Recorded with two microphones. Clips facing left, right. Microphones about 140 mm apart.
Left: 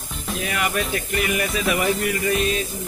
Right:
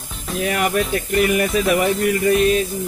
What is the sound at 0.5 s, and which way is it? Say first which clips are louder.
Speech: right 5 dB; 40° right (ahead or behind).